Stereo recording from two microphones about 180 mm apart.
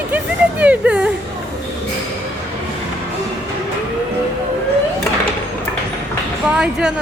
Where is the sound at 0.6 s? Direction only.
5° right (ahead or behind).